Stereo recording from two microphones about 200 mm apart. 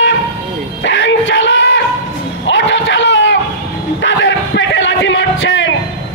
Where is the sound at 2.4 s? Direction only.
65° left (ahead or behind).